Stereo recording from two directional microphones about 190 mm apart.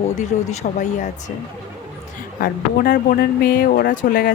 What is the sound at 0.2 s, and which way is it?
Speech, 40° left (ahead or behind).